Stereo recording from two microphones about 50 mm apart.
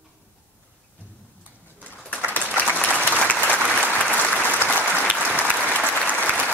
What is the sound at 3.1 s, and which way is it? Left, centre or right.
Applause, left.